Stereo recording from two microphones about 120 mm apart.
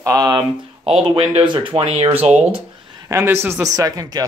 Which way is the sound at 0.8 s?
50° right (ahead or behind).